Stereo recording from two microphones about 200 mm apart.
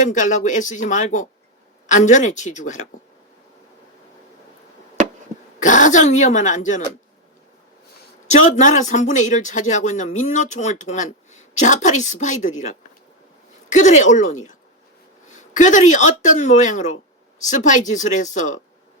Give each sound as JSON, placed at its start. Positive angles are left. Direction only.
{"t": 0.0, "sound": "speech", "side_deg": 40}
{"t": 5.5, "sound": "speech", "side_deg": 40}
{"t": 8.3, "sound": "speech", "side_deg": 35}
{"t": 13.7, "sound": "speech", "side_deg": 35}